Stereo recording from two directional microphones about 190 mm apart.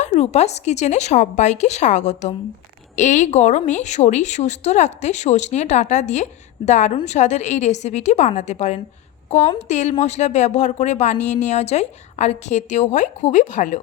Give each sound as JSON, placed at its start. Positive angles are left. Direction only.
{"t": 0.0, "sound": "speech", "side_deg": 35}